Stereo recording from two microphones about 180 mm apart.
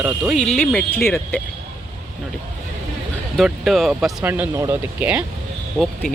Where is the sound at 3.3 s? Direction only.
Centre (ahead or behind).